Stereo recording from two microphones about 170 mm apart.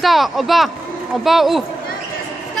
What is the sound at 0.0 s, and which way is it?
Speech, centre (ahead or behind).